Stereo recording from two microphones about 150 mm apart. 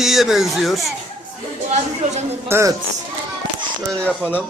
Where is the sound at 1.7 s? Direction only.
50° right (ahead or behind).